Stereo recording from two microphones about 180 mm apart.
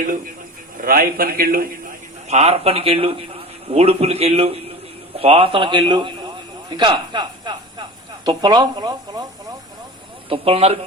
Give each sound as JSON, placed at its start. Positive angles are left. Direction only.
{"t": 0.8, "sound": "a man's voice", "side_deg": -50}
{"t": 2.2, "sound": "a man's voice", "side_deg": -35}
{"t": 10.2, "sound": "speech", "side_deg": -30}